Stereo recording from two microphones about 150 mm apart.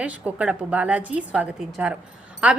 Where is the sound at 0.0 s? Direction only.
10° right (ahead or behind).